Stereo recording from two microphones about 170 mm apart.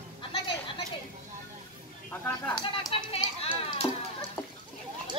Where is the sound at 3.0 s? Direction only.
35° left (ahead or behind).